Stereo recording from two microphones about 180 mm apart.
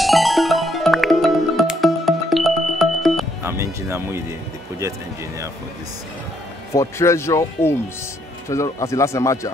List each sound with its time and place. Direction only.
0.0 s music: centre (ahead or behind)
3.4 s music: 15° right (ahead or behind)
6.7 s speech: 15° left (ahead or behind)